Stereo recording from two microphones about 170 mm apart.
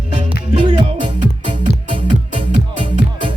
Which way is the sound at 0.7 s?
30° right (ahead or behind).